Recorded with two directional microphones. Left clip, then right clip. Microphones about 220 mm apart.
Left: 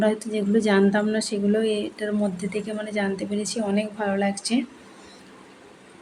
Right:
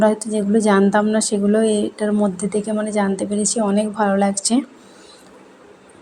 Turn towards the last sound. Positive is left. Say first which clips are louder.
# right 6 dB
turn(degrees=-20)  # may be behind; listen again after turning